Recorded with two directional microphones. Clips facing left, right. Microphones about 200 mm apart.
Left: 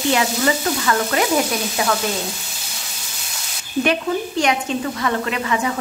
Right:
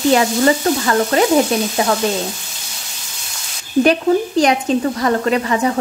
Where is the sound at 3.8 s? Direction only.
35° right (ahead or behind).